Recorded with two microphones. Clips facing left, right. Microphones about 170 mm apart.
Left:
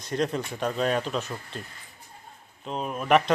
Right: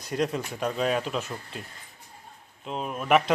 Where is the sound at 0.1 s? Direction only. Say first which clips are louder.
Even; 5° right (ahead or behind).